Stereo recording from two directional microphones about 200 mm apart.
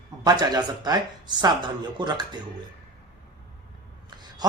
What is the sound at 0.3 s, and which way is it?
Speech, 20° right (ahead or behind).